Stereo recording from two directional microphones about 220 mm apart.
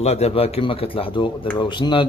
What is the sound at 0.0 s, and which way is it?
Speech, 30° left (ahead or behind).